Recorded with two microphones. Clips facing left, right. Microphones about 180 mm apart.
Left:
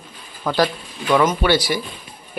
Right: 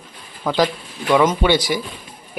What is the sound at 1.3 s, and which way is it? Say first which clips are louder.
Speech: right 1 dB; 15° right (ahead or behind).